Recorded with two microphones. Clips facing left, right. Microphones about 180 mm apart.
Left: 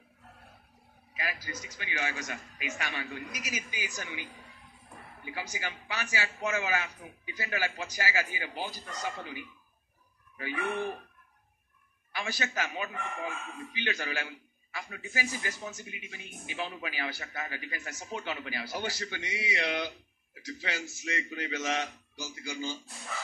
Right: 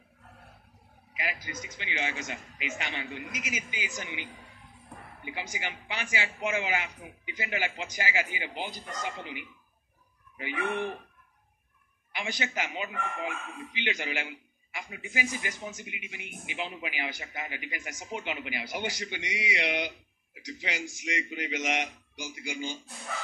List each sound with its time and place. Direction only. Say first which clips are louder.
1.1 s a man's voice: right 1 dB; 20° right (ahead or behind)
12.1 s a man's voice: right 1 dB; 20° right (ahead or behind)